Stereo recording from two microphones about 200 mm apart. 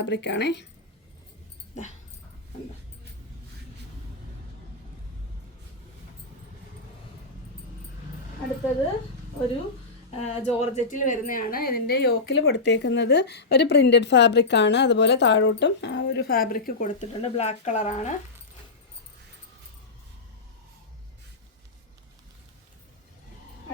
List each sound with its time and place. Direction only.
0.0 s speech: 60° left (ahead or behind)
10.2 s speech: 30° left (ahead or behind); by 16.9 s 45° left (ahead or behind)
17.2 s speech: 30° left (ahead or behind)